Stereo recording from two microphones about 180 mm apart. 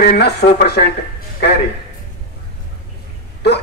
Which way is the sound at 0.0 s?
65° left (ahead or behind).